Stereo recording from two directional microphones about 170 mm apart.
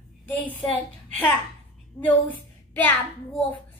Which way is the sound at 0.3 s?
10° left (ahead or behind).